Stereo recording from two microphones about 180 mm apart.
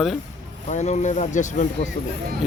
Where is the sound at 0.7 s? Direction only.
40° left (ahead or behind).